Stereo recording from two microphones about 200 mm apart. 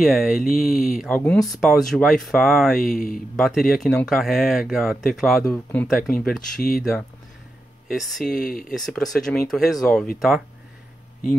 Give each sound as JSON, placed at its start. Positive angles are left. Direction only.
{"t": 0.0, "sound": "speech", "side_deg": 0}
{"t": 8.5, "sound": "speech", "side_deg": 45}
{"t": 8.7, "sound": "speech", "side_deg": 0}